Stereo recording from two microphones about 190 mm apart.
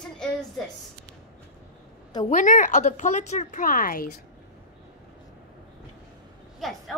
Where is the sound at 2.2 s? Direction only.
45° left (ahead or behind).